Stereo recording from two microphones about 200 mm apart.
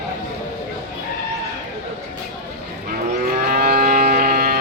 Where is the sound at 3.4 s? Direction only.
50° right (ahead or behind).